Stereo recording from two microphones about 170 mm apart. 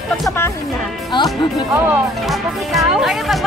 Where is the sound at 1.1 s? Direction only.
25° left (ahead or behind).